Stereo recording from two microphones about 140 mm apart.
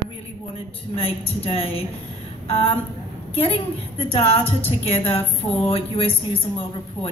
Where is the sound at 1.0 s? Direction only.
45° left (ahead or behind).